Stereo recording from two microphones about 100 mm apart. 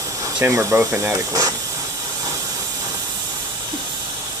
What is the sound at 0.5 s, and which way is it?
Speech, 30° right (ahead or behind).